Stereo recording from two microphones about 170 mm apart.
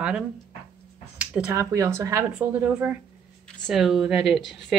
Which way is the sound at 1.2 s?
10° right (ahead or behind).